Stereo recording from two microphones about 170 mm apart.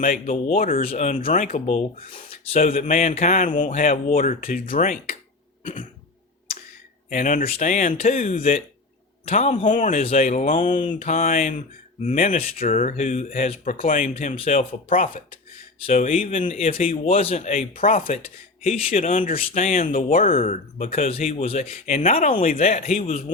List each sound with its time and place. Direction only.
0.0 s speech: 45° left (ahead or behind)
7.1 s speech: 50° left (ahead or behind)
12.5 s speech: 50° left (ahead or behind)
13.8 s speech: 50° left (ahead or behind)
14.3 s speech: 35° left (ahead or behind)
14.8 s speech: 55° left (ahead or behind)
15.9 s speech: 40° left (ahead or behind)
17.7 s speech: 55° left (ahead or behind)
19.4 s speech: 40° left (ahead or behind)
21.2 s speech: 35° left (ahead or behind)